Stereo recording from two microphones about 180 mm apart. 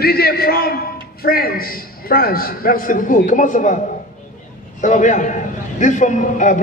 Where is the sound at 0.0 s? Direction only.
60° left (ahead or behind).